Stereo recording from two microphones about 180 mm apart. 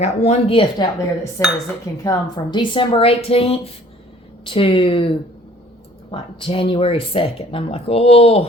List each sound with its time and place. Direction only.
0.0 s speech: 35° left (ahead or behind)
1.4 s speech: 15° left (ahead or behind); by 8.4 s 35° left (ahead or behind)